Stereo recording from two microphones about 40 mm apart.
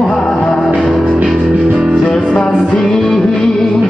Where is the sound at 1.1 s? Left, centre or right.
Right.